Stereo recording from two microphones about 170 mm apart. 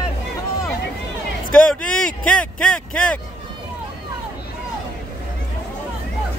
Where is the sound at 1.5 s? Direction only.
5° left (ahead or behind).